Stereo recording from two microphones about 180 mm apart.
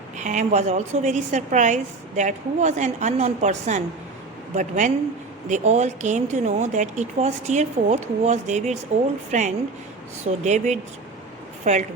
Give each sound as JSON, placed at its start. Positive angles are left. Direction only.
{"t": 0.2, "sound": "a woman's voice", "side_deg": -40}